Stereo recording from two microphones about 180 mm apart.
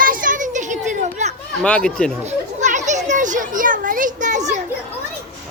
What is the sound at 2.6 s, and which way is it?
Children playing, 40° right (ahead or behind).